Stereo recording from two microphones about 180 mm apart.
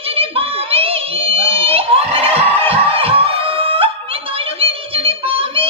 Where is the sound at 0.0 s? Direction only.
30° right (ahead or behind).